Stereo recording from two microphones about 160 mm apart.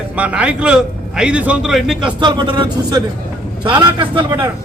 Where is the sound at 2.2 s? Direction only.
30° right (ahead or behind).